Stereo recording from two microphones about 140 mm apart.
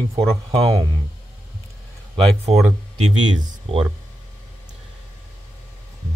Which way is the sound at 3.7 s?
40° right (ahead or behind).